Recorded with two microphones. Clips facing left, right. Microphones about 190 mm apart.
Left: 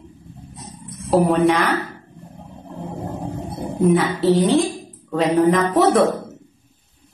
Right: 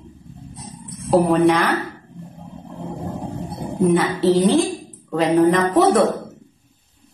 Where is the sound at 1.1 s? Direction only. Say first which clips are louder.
Right 1 dB; centre (ahead or behind).